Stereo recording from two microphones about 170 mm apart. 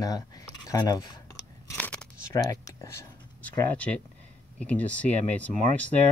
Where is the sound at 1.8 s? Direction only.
10° left (ahead or behind).